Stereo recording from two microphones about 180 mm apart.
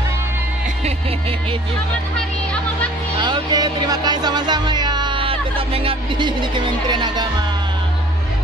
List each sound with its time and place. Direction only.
3.2 s music: 25° right (ahead or behind)